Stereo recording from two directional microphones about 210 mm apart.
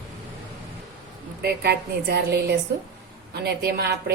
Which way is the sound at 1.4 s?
50° right (ahead or behind).